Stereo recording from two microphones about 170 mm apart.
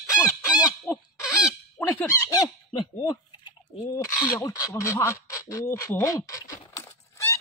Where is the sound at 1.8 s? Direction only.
15° left (ahead or behind).